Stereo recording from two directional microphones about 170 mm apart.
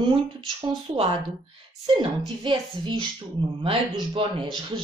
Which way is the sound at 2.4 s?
30° right (ahead or behind).